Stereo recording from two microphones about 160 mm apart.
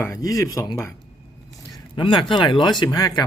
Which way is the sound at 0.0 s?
20° left (ahead or behind).